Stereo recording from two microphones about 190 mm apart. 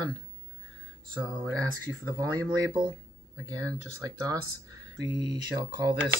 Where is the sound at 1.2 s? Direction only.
15° right (ahead or behind).